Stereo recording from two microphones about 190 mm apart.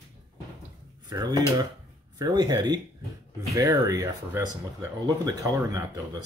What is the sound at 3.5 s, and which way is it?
Speech, 20° right (ahead or behind).